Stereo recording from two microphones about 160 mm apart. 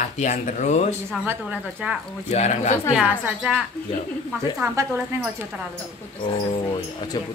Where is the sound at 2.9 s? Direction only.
5° right (ahead or behind).